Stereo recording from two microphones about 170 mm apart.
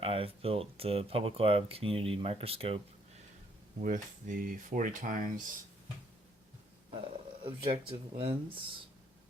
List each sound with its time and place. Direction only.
0.0 s speech: 35° right (ahead or behind)
3.8 s speech: 50° right (ahead or behind)
7.4 s speech: 30° right (ahead or behind)